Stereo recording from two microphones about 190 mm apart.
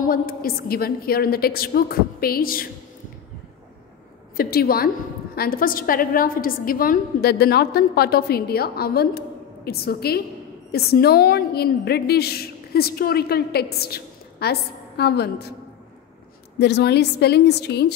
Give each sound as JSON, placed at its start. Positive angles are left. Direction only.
{"t": 0.0, "sound": "a woman's voice", "side_deg": 50}
{"t": 4.4, "sound": "a woman's voice", "side_deg": 55}
{"t": 16.5, "sound": "a woman's voice", "side_deg": 60}